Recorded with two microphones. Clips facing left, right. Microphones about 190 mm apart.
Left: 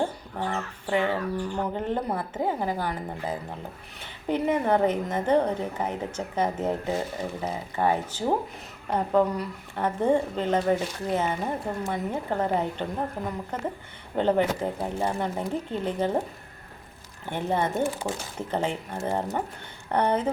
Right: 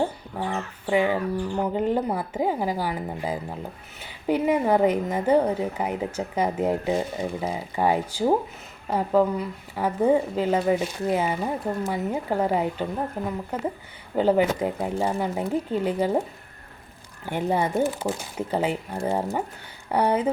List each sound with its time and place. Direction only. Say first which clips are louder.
0.0 s speech: right 2 dB; 10° right (ahead or behind)
17.2 s speech: right 2 dB; 10° right (ahead or behind)